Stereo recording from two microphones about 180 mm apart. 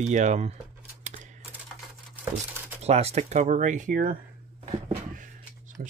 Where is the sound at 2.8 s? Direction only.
35° right (ahead or behind).